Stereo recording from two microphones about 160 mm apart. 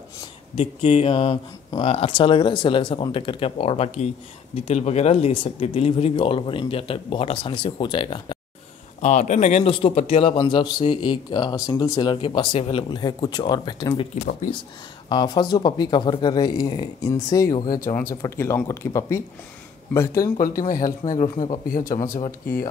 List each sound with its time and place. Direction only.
0.6 s speech: 35° left (ahead or behind)
9.0 s speech: 50° left (ahead or behind); by 14.0 s 25° left (ahead or behind)
15.0 s speech: 25° left (ahead or behind)
20.3 s speech: 60° left (ahead or behind)